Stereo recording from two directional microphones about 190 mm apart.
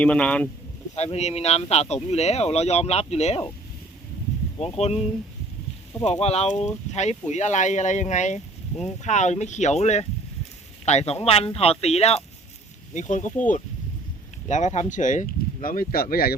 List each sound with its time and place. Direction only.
0.0 s speech: 5° left (ahead or behind)
0.9 s speech: 35° left (ahead or behind)
4.6 s speech: 30° left (ahead or behind)
6.1 s speech: 35° left (ahead or behind); by 16.4 s 50° left (ahead or behind)